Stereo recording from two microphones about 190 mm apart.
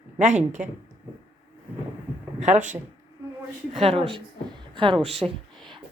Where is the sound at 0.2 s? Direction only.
40° right (ahead or behind).